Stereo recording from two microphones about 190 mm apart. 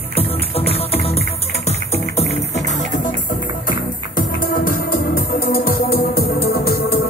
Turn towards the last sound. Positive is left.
turn(degrees=55)  # may be behind; listen again after turning